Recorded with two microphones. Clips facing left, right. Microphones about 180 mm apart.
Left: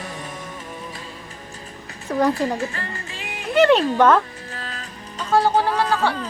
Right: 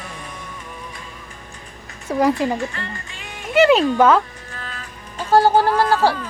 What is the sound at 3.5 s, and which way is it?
Speech, 5° right (ahead or behind).